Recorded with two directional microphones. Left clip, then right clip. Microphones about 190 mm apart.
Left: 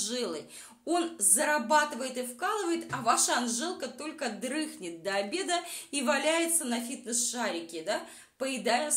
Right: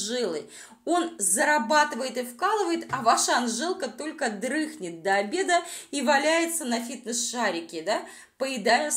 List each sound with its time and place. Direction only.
0.0 s a woman's voice: 10° right (ahead or behind)